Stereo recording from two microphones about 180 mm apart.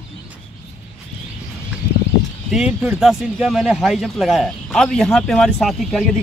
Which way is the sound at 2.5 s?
5° right (ahead or behind).